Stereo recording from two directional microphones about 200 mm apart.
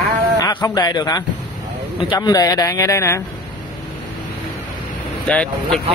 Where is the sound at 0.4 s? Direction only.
20° left (ahead or behind).